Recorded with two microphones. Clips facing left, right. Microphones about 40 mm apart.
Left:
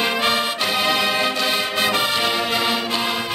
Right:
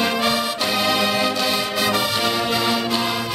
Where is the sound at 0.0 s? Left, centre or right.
Centre.